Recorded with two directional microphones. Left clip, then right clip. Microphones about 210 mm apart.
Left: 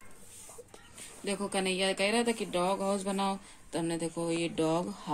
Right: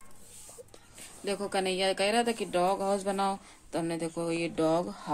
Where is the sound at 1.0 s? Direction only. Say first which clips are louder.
Right 2 dB; 5° right (ahead or behind).